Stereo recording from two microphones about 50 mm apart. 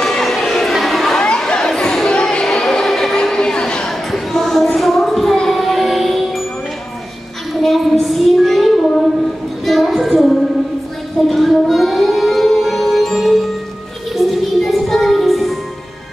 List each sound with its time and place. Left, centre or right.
0.0 s a sound: centre
4.7 s music: centre
7.6 s child singing: centre
11.2 s music: centre